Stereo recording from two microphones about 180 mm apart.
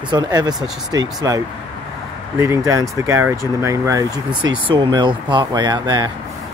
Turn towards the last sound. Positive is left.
turn(degrees=-25)  # may be behind; listen again after turning